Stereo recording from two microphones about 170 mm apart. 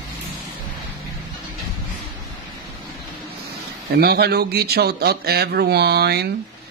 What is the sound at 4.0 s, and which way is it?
Speech, 70° right (ahead or behind).